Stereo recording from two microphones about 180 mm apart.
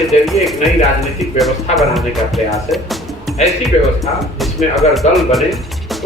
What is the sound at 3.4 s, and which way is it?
Speech, 40° left (ahead or behind).